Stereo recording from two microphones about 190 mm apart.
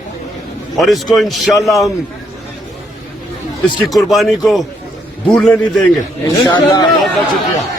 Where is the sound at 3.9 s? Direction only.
Centre (ahead or behind).